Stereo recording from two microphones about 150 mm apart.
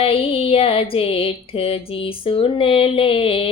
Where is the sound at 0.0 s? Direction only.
40° left (ahead or behind).